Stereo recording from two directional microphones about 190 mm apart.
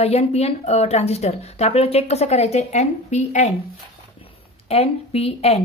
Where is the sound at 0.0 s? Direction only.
35° left (ahead or behind).